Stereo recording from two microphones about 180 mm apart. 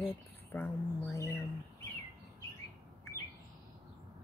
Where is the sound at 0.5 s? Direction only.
15° left (ahead or behind).